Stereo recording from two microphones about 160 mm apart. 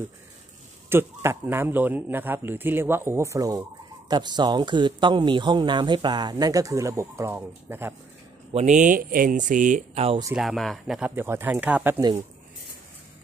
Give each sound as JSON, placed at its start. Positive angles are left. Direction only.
{"t": 0.8, "sound": "speech", "side_deg": -15}
{"t": 8.5, "sound": "speech", "side_deg": -50}
{"t": 10.3, "sound": "speech", "side_deg": 0}
{"t": 11.1, "sound": "speech", "side_deg": -15}